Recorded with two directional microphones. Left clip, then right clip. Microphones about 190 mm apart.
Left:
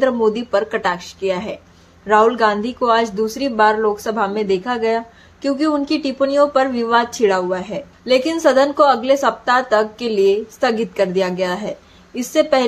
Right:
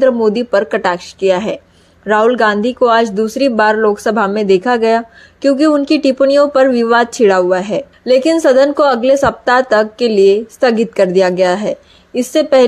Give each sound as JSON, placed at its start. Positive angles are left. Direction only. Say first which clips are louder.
{"t": 0.0, "sound": "speech", "louder": "right 5 dB", "side_deg": -25}